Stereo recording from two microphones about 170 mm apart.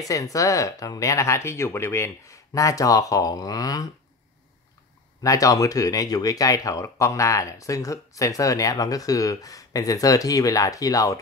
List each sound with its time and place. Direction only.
0.0 s speech: 20° left (ahead or behind)
5.2 s speech: 20° left (ahead or behind)